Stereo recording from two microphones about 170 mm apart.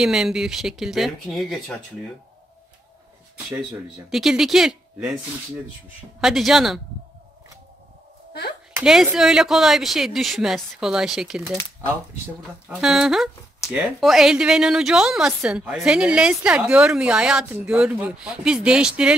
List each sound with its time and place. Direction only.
0.0 s speech: 5° right (ahead or behind)
4.1 s speech: centre (ahead or behind)
6.2 s speech: centre (ahead or behind)
8.3 s a sound: 75° left (ahead or behind)
8.8 s speech: centre (ahead or behind)
12.6 s speech: 5° right (ahead or behind)